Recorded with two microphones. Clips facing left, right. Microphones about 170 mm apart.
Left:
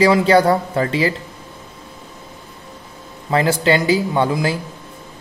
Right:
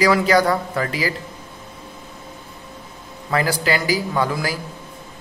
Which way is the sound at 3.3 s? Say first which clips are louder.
Left 4 dB; 25° left (ahead or behind).